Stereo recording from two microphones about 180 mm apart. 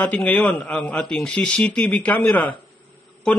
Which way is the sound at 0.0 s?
5° left (ahead or behind).